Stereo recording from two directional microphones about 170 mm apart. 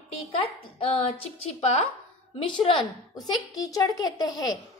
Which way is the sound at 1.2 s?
35° left (ahead or behind).